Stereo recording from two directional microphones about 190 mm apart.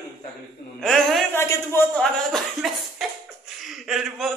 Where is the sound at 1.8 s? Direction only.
5° left (ahead or behind).